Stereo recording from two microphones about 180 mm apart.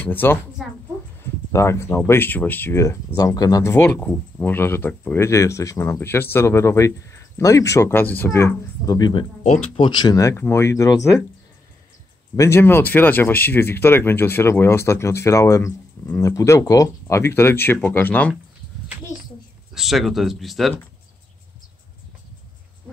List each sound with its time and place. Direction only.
0.0 s speech: 10° left (ahead or behind)
1.5 s speech: 15° left (ahead or behind)
9.4 s speech: 45° left (ahead or behind)
9.8 s speech: 25° left (ahead or behind)
12.4 s speech: 15° left (ahead or behind)
19.7 s speech: centre (ahead or behind)